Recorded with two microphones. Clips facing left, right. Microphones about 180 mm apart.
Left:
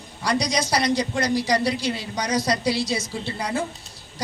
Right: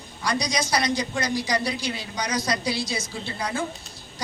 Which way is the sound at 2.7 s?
70° left (ahead or behind).